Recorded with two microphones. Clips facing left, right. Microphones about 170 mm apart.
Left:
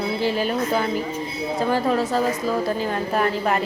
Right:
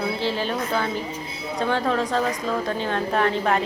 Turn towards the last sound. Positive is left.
turn(degrees=5)  # may be behind; listen again after turning